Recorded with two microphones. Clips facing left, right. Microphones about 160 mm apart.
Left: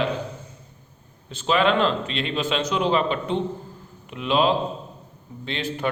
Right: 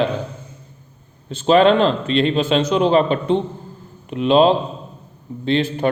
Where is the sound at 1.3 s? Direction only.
35° right (ahead or behind).